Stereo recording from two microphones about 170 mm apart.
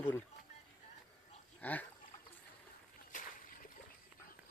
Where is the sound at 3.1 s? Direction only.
50° left (ahead or behind).